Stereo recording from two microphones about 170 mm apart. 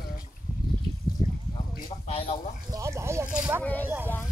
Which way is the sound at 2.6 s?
15° right (ahead or behind).